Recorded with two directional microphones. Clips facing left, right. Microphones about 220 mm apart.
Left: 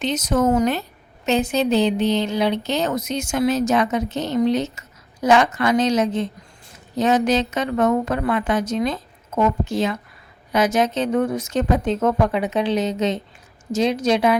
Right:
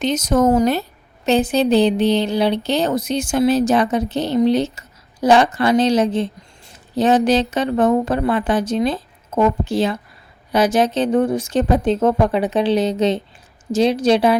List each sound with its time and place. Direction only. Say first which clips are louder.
0.0 s a woman's voice: right 3 dB; 45° right (ahead or behind)